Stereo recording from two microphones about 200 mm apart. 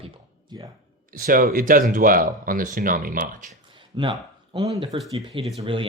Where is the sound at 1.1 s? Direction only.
45° right (ahead or behind).